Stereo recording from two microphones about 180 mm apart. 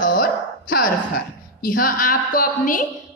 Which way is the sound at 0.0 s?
50° left (ahead or behind).